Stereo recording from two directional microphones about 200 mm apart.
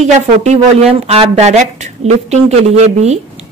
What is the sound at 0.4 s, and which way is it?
A woman's voice, 35° right (ahead or behind).